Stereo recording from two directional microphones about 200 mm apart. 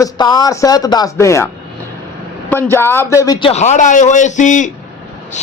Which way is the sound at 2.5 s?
10° left (ahead or behind).